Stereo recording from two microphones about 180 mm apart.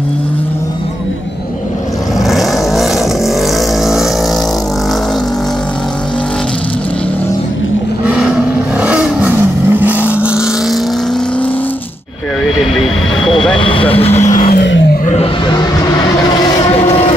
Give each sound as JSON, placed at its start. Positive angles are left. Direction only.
{"t": 2.1, "sound": "vehicle", "side_deg": 0}
{"t": 8.7, "sound": "vehicle", "side_deg": -5}
{"t": 13.6, "sound": "vehicle", "side_deg": 30}
{"t": 14.5, "sound": "vehicle", "side_deg": 75}
{"t": 16.3, "sound": "vehicle", "side_deg": 20}
{"t": 16.7, "sound": "vehicle", "side_deg": 35}